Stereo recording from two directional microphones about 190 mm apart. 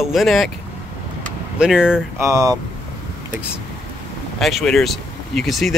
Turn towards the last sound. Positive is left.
turn(degrees=0)  # may be behind; listen again after turning